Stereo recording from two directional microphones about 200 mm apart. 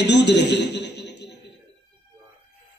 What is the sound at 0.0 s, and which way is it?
A man's voice, 60° left (ahead or behind).